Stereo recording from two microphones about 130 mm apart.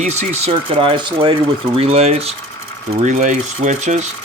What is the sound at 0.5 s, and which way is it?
Speech, 45° right (ahead or behind).